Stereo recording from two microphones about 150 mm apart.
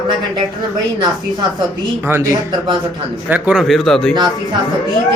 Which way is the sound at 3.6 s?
Centre (ahead or behind).